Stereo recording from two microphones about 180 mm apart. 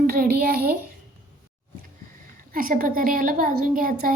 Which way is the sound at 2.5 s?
50° right (ahead or behind).